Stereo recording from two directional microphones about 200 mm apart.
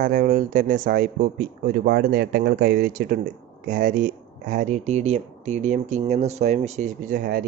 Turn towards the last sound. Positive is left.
turn(degrees=-55)  # may be behind; listen again after turning